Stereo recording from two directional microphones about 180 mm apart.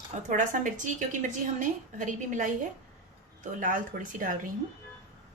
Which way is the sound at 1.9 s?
45° right (ahead or behind).